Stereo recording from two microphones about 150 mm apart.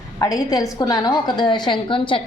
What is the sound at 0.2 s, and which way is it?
A woman's voice, 25° left (ahead or behind).